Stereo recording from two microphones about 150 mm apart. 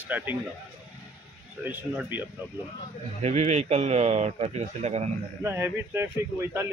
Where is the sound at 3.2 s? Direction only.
50° right (ahead or behind).